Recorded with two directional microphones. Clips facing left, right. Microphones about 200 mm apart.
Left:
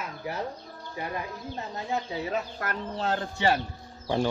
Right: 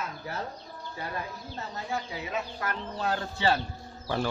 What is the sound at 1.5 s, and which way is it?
A man's voice, 20° left (ahead or behind).